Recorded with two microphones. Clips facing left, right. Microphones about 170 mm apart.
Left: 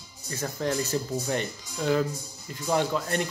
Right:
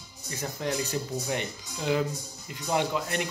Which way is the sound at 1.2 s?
15° right (ahead or behind).